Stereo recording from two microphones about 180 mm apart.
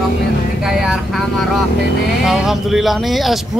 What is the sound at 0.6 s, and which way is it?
Vehicle, 5° right (ahead or behind).